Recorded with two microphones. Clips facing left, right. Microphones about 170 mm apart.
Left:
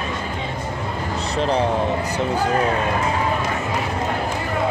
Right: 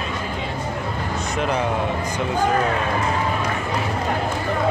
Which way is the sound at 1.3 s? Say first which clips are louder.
Left 3 dB; 30° left (ahead or behind).